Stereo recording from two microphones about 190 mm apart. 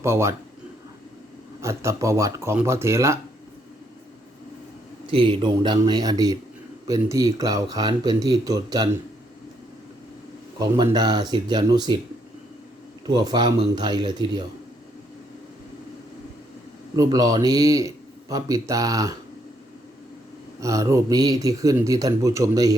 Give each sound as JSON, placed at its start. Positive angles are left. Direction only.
{"t": 0.0, "sound": "a man's voice", "side_deg": -15}
{"t": 1.6, "sound": "a man's voice", "side_deg": -15}
{"t": 5.1, "sound": "speech", "side_deg": -25}
{"t": 10.6, "sound": "speech", "side_deg": -20}
{"t": 13.1, "sound": "speech", "side_deg": -20}
{"t": 16.9, "sound": "a man's voice", "side_deg": -20}
{"t": 20.6, "sound": "a man's voice", "side_deg": -15}